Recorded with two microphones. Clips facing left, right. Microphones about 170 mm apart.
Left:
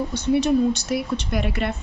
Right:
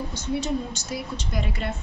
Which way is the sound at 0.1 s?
65° left (ahead or behind).